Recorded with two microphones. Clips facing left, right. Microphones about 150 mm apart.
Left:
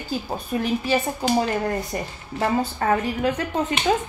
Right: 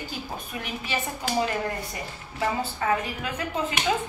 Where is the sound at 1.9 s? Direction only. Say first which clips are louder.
Left 5 dB; 45° left (ahead or behind).